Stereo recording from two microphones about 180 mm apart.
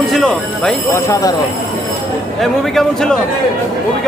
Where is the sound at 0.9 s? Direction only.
20° left (ahead or behind).